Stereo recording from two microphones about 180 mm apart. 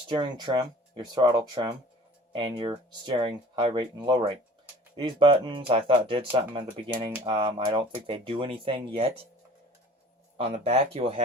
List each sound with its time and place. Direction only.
0.1 s speech: 25° right (ahead or behind)
10.3 s speech: 35° right (ahead or behind)